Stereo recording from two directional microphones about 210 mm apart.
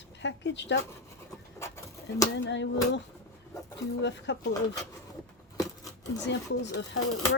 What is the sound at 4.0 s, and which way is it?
Speech, 55° left (ahead or behind).